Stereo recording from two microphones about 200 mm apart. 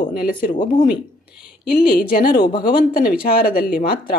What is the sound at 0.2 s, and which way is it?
Speech, 45° left (ahead or behind).